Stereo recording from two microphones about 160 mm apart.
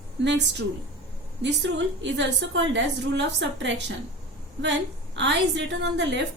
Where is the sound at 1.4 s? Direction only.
90° right.